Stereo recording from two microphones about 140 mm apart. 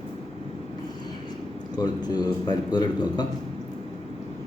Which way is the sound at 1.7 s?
30° left (ahead or behind).